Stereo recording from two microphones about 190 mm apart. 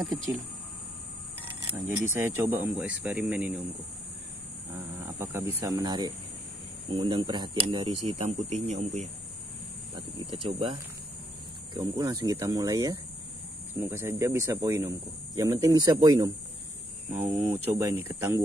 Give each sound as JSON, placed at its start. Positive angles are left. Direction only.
{"t": 1.9, "sound": "speech", "side_deg": -10}
{"t": 4.9, "sound": "speech", "side_deg": -15}
{"t": 17.8, "sound": "speech", "side_deg": -15}